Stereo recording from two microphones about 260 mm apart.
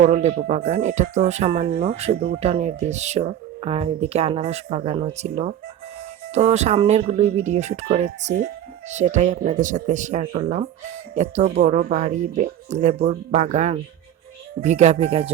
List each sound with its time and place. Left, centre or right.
0.0 s speech: right